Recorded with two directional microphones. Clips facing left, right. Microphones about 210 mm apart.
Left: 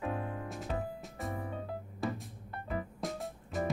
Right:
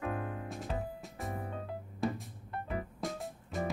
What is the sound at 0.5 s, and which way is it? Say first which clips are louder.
Music: left 1 dB; centre (ahead or behind).